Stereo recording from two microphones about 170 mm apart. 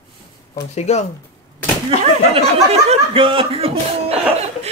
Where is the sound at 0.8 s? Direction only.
40° left (ahead or behind).